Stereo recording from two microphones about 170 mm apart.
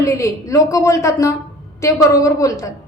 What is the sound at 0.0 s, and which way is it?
A woman's voice, 20° left (ahead or behind).